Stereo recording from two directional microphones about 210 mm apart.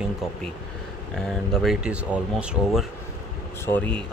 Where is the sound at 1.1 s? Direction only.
Centre (ahead or behind).